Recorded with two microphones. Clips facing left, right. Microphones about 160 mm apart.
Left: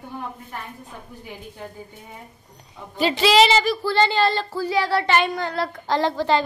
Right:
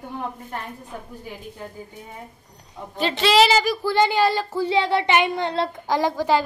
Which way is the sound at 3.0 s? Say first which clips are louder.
Left 1 dB; 5° left (ahead or behind).